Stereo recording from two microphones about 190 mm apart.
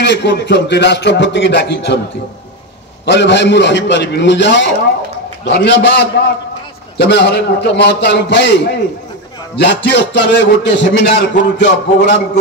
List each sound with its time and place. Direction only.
0.0 s speech: 65° left (ahead or behind)
3.1 s a man's voice: 65° left (ahead or behind)